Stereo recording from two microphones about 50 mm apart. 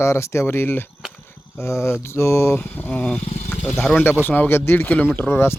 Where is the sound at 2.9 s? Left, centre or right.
Left.